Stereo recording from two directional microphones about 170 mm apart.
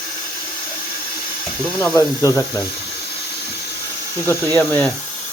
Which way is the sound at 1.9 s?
20° left (ahead or behind).